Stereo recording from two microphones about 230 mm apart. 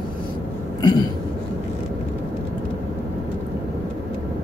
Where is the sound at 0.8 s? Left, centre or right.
Centre.